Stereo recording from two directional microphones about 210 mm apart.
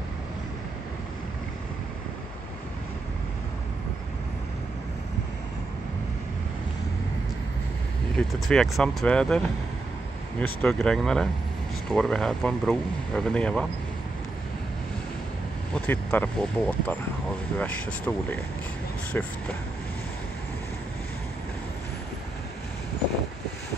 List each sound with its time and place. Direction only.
8.2 s speech: 5° left (ahead or behind)
10.4 s speech: 5° left (ahead or behind)
15.7 s speech: 5° left (ahead or behind)